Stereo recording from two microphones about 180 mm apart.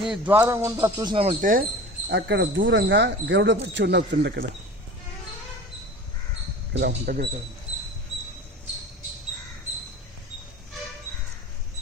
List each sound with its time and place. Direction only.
0.0 s speech: 5° right (ahead or behind)
0.4 s speech: 20° right (ahead or behind)
1.4 s speech: 50° right (ahead or behind)
2.0 s speech: 70° right (ahead or behind)
6.7 s speech: 60° right (ahead or behind)